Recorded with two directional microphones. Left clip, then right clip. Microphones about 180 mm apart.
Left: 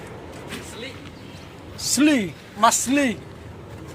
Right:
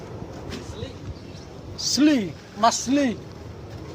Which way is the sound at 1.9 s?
25° left (ahead or behind).